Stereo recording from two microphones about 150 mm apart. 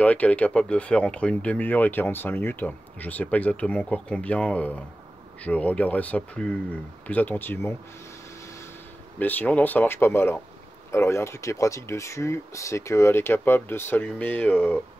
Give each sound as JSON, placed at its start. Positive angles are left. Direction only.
{"t": 0.0, "sound": "speech", "side_deg": 10}
{"t": 9.2, "sound": "speech", "side_deg": 10}